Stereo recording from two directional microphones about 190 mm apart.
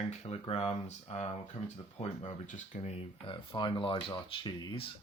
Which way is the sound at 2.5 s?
35° left (ahead or behind).